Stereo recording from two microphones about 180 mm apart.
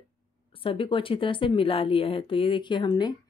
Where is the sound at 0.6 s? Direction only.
30° left (ahead or behind).